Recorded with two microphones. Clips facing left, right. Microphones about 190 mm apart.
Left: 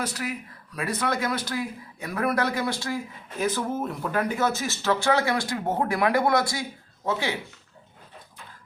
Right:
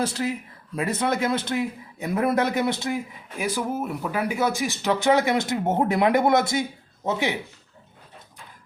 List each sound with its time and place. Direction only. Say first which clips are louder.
0.0 s speech: right 5 dB; 30° right (ahead or behind)
3.3 s speech: even; 10° right (ahead or behind)